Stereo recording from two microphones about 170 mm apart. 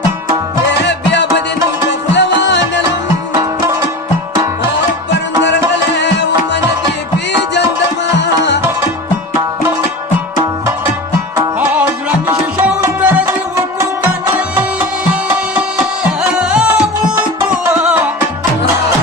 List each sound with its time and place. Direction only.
0.9 s music: 90° left
5.5 s music: 90° left
11.3 s music: 10° right (ahead or behind)
14.3 s music: 10° right (ahead or behind)
17.7 s music: 10° right (ahead or behind)